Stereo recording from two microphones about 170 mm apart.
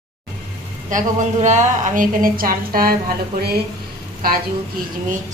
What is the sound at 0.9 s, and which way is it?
A woman's voice, 45° right (ahead or behind).